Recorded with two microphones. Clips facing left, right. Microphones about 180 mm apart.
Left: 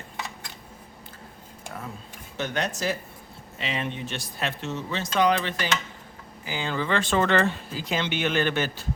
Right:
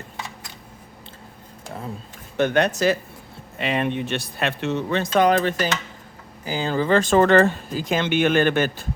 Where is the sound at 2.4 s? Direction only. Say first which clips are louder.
Right 9 dB; 60° right (ahead or behind).